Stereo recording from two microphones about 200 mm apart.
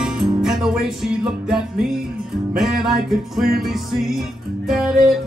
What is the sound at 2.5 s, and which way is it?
Speech, centre (ahead or behind).